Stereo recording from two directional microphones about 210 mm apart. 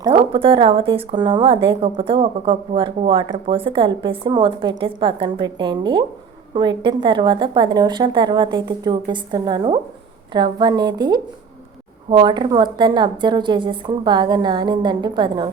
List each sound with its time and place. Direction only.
0.0 s speech: 25° right (ahead or behind)